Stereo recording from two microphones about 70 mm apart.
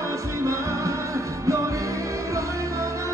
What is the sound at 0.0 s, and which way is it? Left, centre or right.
Music, right.